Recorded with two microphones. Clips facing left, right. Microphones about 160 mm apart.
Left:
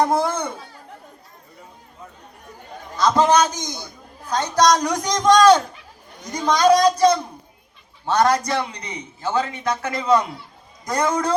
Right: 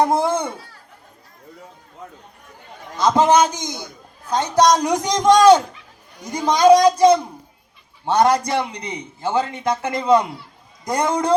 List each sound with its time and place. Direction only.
0.0 s a man's voice: 25° right (ahead or behind)
3.0 s a man's voice: 20° right (ahead or behind)
4.5 s a man's voice: 25° right (ahead or behind)
6.2 s a man's voice: 10° right (ahead or behind)
6.5 s a man's voice: 20° right (ahead or behind)
8.1 s a man's voice: 20° right (ahead or behind)